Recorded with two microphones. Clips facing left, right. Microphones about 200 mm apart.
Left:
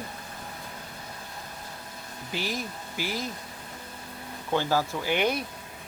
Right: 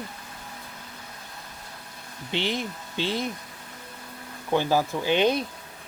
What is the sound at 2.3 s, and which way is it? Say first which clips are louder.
Speech: right 4 dB; 25° right (ahead or behind).